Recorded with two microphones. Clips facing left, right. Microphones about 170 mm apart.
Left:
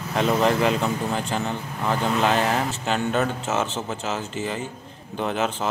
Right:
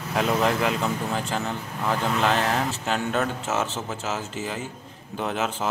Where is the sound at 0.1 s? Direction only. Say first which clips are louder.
Left 2 dB; centre (ahead or behind).